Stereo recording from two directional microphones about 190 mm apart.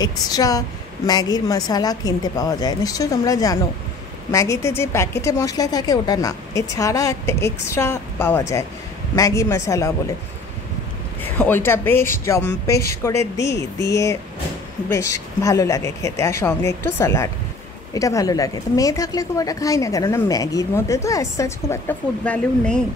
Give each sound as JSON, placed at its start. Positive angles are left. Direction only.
{"t": 0.0, "sound": "a woman's voice", "side_deg": 20}
{"t": 11.2, "sound": "speech", "side_deg": 10}
{"t": 14.9, "sound": "speech", "side_deg": 15}